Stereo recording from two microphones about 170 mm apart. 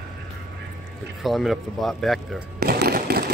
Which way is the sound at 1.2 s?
Centre (ahead or behind).